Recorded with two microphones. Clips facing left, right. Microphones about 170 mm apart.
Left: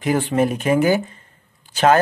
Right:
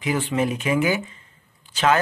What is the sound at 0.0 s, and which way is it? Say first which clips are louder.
Speech: left 4 dB; 50° left (ahead or behind).